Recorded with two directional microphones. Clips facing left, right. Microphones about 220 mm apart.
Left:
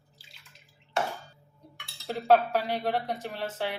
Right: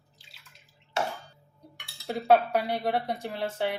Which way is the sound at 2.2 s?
10° right (ahead or behind).